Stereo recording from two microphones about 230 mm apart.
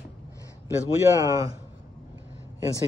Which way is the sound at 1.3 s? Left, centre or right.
Centre.